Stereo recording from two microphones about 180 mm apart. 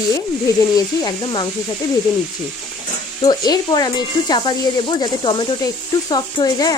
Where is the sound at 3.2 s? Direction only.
20° left (ahead or behind).